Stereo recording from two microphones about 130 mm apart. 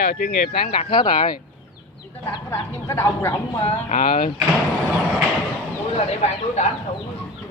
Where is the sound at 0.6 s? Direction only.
45° left (ahead or behind).